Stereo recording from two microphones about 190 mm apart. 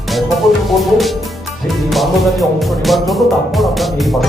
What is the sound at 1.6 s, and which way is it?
Speech, centre (ahead or behind).